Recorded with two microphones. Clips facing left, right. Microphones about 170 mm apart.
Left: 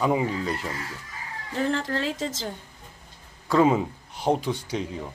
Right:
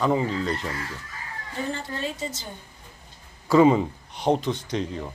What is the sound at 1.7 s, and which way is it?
Speech, 90° left.